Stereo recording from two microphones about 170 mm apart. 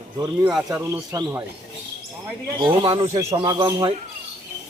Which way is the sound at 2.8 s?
30° right (ahead or behind).